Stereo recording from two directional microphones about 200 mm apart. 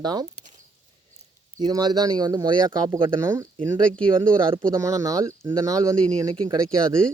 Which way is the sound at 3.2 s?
15° right (ahead or behind).